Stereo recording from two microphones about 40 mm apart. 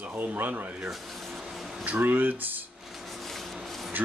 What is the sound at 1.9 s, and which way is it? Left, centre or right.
Speech, right.